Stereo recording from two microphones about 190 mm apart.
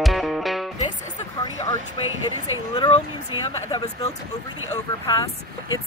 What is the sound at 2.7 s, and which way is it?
Speech, 25° left (ahead or behind).